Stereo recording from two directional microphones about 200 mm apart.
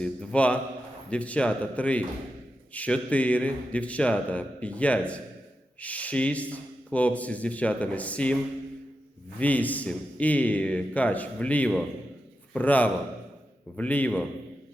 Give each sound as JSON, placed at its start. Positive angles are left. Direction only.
{"t": 0.0, "sound": "a man's voice", "side_deg": 5}
{"t": 9.4, "sound": "a man's voice", "side_deg": 10}